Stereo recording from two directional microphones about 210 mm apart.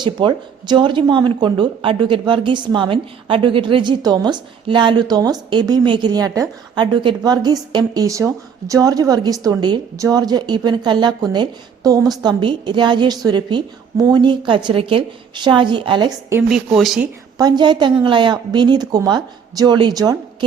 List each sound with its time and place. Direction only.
0.0 s a woman's voice: 20° right (ahead or behind)
16.5 s speech: centre (ahead or behind)
17.3 s a woman's voice: 20° right (ahead or behind)